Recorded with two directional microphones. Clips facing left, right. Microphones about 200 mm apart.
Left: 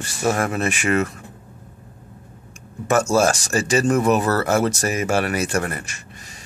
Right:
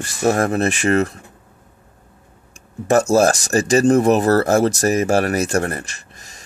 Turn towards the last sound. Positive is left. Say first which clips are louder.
# right 1 dB
turn(degrees=-40)  # may be behind; listen again after turning